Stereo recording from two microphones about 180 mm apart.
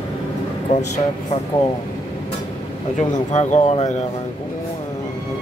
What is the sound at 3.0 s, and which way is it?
Speech, 40° left (ahead or behind).